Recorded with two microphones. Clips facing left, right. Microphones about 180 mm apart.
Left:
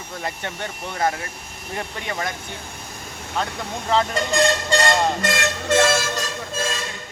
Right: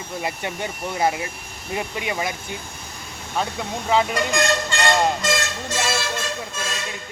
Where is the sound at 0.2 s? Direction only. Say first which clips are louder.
Right 2 dB; 10° right (ahead or behind).